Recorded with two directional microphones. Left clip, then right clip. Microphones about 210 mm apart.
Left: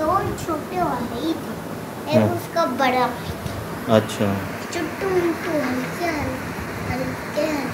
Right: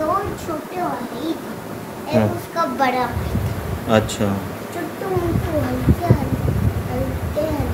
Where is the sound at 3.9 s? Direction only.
15° right (ahead or behind).